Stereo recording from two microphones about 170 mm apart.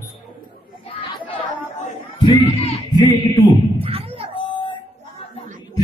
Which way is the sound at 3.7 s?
35° right (ahead or behind).